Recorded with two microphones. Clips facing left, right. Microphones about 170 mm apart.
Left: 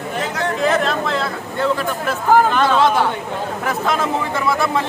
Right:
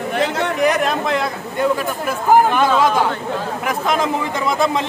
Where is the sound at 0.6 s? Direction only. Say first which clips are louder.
Right 1 dB; 15° right (ahead or behind).